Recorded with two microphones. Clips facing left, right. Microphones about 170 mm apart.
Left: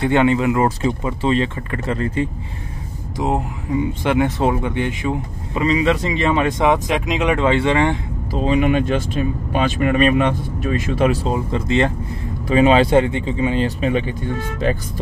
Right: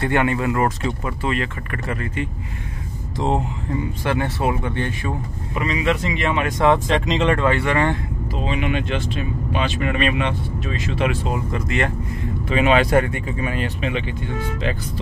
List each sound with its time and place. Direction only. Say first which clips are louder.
0.0 s speech: left 4 dB; 20° left (ahead or behind)
3.2 s speech: left 1 dB; 10° left (ahead or behind)
4.0 s speech: left 4 dB; 20° left (ahead or behind)
5.5 s speech: left 4 dB; 30° left (ahead or behind)
6.6 s speech: even; 15° left (ahead or behind)
8.5 s speech: left 7 dB; 45° left (ahead or behind); by 13.7 s 25° left (ahead or behind)
13.7 s speech: left 5 dB; 40° left (ahead or behind)